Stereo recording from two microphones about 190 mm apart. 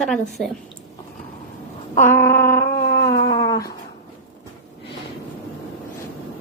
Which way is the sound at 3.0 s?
20° left (ahead or behind).